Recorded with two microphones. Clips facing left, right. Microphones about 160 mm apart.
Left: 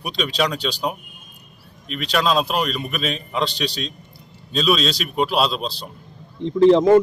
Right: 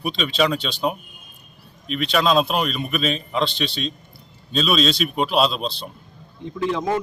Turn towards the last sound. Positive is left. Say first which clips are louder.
# left 11 dB
turn(degrees=30)  # may be behind; listen again after turning